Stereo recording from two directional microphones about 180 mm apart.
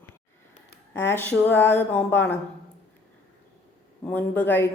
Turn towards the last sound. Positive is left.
turn(degrees=10)  # may be behind; listen again after turning